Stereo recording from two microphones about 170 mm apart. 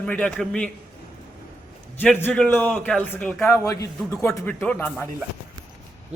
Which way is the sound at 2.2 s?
10° left (ahead or behind).